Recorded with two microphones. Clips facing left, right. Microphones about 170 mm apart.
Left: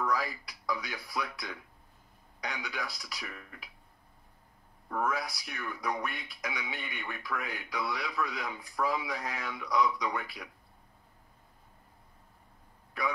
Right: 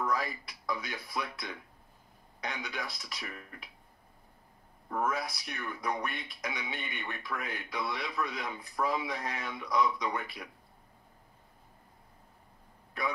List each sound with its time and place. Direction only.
0.0 s a man's voice: 20° right (ahead or behind)
4.8 s a man's voice: 20° right (ahead or behind)